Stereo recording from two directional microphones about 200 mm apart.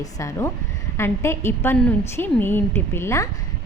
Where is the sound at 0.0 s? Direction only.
15° left (ahead or behind).